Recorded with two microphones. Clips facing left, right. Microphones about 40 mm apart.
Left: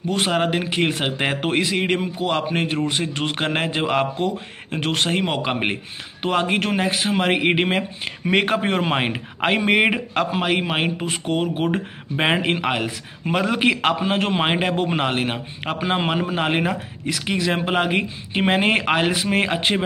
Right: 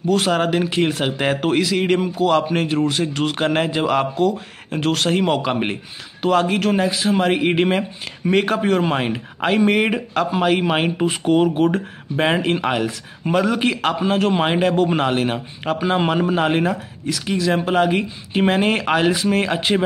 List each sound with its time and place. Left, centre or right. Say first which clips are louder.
0.1 s speech: right 3 dB; centre
0.7 s speech: right 2 dB; left
11.0 s speech: right 6 dB; centre
11.5 s speech: right 4 dB; centre
16.0 s speech: right 4 dB; centre
17.1 s speech: right 2 dB; left; by 19.8 s centre